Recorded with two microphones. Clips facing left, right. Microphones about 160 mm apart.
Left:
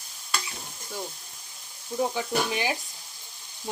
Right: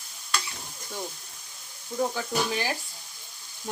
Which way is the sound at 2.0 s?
15° left (ahead or behind).